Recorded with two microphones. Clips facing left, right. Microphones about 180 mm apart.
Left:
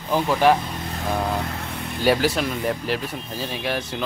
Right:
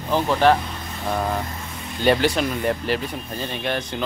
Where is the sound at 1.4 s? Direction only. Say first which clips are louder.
Left 3 dB; 70° left (ahead or behind).